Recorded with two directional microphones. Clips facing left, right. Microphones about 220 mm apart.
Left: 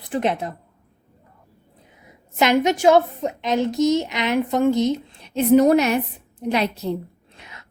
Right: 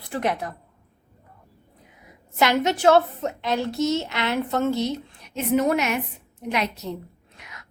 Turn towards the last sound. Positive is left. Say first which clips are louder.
# left 2 dB
turn(degrees=30)  # may be behind; listen again after turning